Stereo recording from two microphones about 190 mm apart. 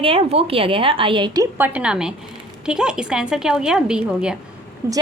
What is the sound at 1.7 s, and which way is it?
A woman's voice, 5° right (ahead or behind).